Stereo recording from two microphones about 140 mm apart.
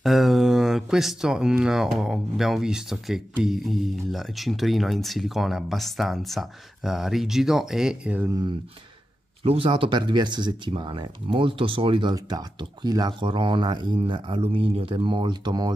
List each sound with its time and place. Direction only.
0.0 s speech: centre (ahead or behind)
8.3 s speech: 30° right (ahead or behind)
9.4 s speech: 40° right (ahead or behind)